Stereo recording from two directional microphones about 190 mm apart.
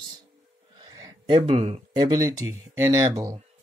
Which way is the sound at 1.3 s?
35° right (ahead or behind).